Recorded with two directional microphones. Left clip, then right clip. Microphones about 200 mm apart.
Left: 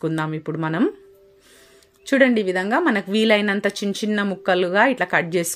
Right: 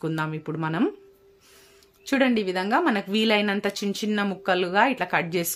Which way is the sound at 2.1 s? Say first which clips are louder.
Left 6 dB; 15° left (ahead or behind).